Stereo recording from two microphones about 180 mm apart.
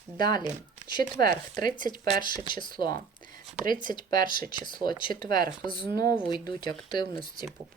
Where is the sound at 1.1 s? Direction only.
55° right (ahead or behind).